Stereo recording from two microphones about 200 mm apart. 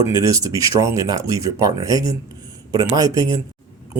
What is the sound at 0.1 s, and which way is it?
Speech, 15° right (ahead or behind).